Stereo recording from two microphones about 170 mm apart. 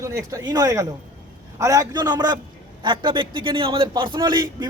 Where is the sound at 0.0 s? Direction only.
15° right (ahead or behind).